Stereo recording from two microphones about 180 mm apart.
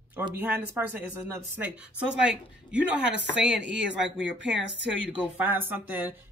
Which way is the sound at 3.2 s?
75° right (ahead or behind).